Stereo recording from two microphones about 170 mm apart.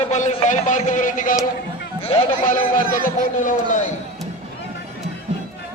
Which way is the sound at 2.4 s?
50° left (ahead or behind).